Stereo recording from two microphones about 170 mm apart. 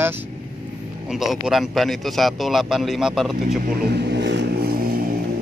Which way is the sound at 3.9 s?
80° right.